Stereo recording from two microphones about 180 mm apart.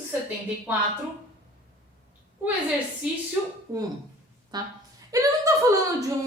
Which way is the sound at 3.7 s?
15° right (ahead or behind).